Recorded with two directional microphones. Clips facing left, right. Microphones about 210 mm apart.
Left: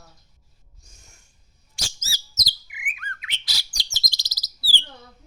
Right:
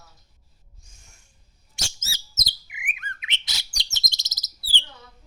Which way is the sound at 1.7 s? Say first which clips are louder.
Even; 25° right (ahead or behind).